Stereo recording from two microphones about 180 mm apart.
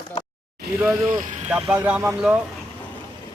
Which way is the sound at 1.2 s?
45° right (ahead or behind).